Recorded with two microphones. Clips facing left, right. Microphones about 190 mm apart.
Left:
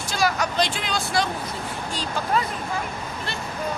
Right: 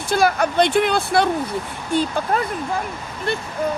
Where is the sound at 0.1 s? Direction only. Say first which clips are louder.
Right 6 dB; 55° right (ahead or behind).